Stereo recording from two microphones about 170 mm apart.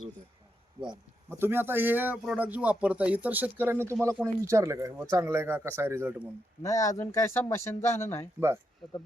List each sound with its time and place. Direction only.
0.8 s speech: 25° right (ahead or behind)
1.3 s speech: 15° right (ahead or behind)
6.6 s speech: 20° left (ahead or behind)